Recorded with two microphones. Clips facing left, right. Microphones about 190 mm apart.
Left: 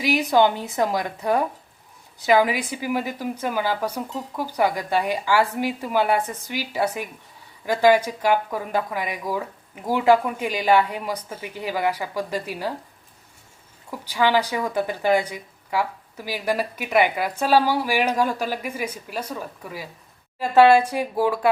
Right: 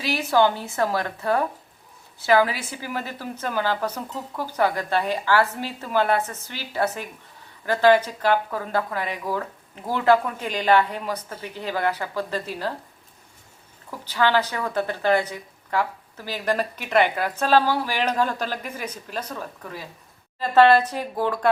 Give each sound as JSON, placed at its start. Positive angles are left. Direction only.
{"t": 0.0, "sound": "speech", "side_deg": 15}
{"t": 13.9, "sound": "speech", "side_deg": 10}